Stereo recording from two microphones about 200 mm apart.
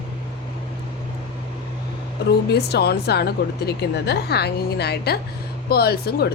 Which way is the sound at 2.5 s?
55° left (ahead or behind).